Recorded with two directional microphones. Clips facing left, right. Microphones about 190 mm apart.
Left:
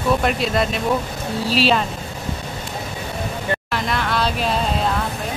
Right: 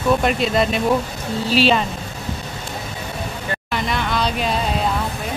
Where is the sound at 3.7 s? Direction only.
Centre (ahead or behind).